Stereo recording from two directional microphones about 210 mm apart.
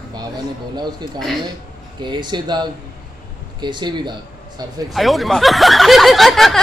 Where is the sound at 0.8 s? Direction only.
20° right (ahead or behind).